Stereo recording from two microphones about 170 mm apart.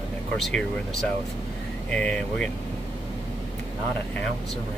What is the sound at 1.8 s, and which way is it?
Speech, 5° left (ahead or behind).